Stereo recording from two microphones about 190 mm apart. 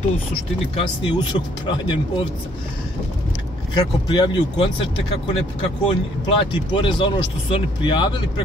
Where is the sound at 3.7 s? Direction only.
25° left (ahead or behind).